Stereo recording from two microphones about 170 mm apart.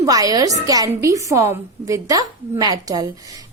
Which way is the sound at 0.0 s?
20° right (ahead or behind).